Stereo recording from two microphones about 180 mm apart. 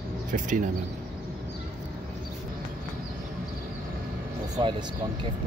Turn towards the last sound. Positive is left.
turn(degrees=-25)  # may be behind; listen again after turning